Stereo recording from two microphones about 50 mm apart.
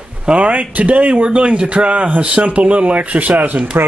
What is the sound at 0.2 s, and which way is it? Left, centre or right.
Speech, right.